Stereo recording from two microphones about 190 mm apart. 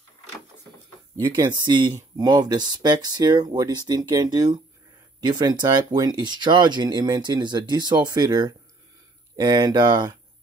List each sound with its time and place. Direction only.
1.3 s speech: 20° right (ahead or behind)